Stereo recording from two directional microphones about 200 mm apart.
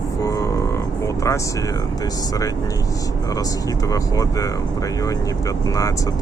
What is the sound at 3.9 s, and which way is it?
Speech, 15° left (ahead or behind).